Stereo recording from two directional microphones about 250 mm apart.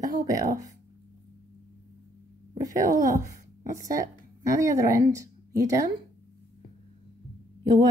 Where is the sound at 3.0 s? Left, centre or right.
Centre.